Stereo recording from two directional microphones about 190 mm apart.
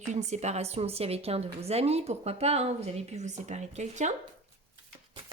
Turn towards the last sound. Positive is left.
turn(degrees=-40)  # may be behind; listen again after turning